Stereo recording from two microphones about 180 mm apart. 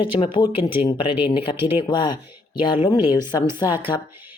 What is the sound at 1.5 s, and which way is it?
Speech, 10° right (ahead or behind).